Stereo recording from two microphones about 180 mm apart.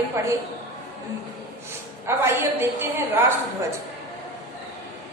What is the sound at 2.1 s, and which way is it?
A woman's voice, 15° right (ahead or behind).